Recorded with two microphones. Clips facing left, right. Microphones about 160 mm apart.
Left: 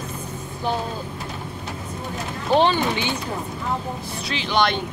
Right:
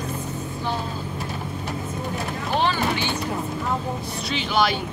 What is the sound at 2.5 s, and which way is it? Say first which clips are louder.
Speech: left 5 dB; 20° left (ahead or behind).